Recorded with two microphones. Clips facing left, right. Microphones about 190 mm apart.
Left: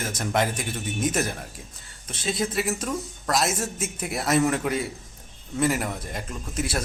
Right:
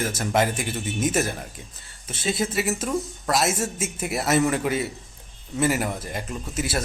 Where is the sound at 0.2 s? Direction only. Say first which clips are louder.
Right 1 dB; 5° right (ahead or behind).